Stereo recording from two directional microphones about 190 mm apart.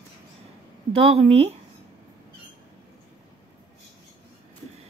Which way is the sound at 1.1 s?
35° right (ahead or behind).